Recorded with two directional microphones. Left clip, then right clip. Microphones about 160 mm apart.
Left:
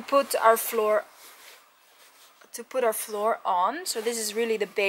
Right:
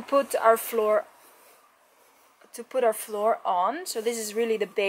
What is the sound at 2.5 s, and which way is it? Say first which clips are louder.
Speech: right 2 dB; centre (ahead or behind).